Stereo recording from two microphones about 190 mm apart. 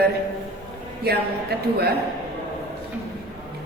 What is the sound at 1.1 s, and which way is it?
Speech, 55° right (ahead or behind).